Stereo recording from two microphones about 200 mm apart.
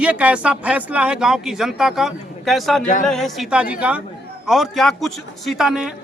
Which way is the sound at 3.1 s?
Centre (ahead or behind).